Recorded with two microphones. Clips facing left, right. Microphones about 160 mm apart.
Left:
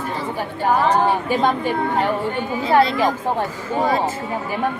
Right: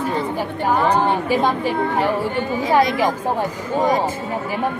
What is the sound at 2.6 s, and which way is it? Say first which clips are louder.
A woman's voice: left 1 dB; 15° right (ahead or behind).